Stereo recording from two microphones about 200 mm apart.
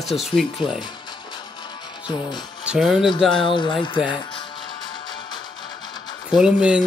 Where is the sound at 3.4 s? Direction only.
25° left (ahead or behind).